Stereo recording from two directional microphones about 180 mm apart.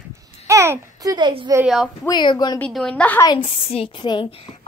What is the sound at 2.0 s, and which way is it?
Speech, 25° left (ahead or behind).